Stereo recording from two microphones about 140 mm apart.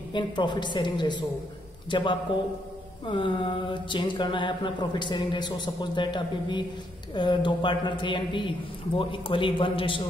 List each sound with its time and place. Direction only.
0.1 s mantra: 35° left (ahead or behind)